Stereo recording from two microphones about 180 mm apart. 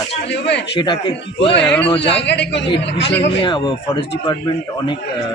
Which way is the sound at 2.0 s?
75° left (ahead or behind).